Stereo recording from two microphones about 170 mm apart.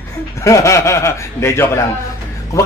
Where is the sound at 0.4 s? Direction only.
15° left (ahead or behind).